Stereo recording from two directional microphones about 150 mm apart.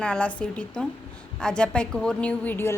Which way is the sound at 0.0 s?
5° left (ahead or behind).